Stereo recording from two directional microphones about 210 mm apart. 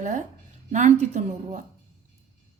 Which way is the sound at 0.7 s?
35° right (ahead or behind).